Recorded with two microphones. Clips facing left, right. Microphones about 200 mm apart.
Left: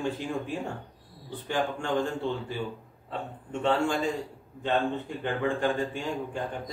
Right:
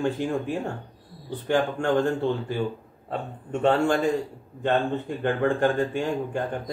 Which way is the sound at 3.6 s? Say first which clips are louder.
Right 5 dB; 55° right (ahead or behind).